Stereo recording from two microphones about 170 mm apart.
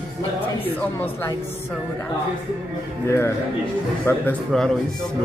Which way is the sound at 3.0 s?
15° left (ahead or behind).